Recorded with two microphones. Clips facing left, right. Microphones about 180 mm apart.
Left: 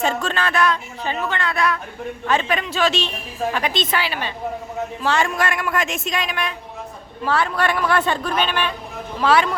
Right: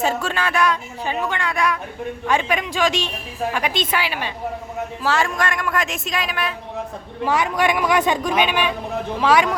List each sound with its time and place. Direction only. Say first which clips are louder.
0.0 s speech: even; 10° right (ahead or behind)
5.0 s speech: even; centre (ahead or behind)
7.3 s speech: right 1 dB; 15° right (ahead or behind)